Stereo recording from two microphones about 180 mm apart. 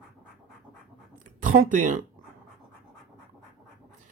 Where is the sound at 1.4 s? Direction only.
45° right (ahead or behind).